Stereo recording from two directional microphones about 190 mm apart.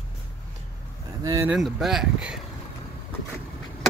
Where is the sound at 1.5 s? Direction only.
Centre (ahead or behind).